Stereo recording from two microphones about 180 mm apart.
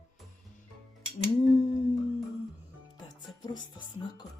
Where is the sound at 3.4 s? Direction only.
25° left (ahead or behind).